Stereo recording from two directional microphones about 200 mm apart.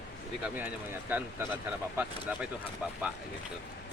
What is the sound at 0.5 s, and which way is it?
Speech, 10° right (ahead or behind).